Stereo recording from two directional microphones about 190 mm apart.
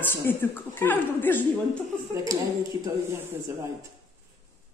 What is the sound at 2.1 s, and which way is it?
Speech, 15° right (ahead or behind).